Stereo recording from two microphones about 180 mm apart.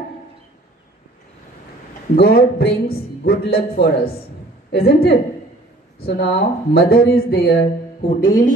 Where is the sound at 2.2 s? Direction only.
60° left (ahead or behind).